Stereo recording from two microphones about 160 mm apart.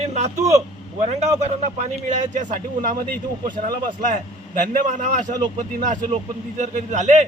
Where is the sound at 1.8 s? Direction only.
50° right (ahead or behind).